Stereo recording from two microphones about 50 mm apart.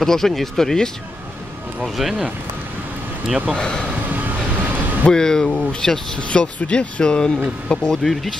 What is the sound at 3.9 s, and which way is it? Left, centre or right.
Vehicle, right.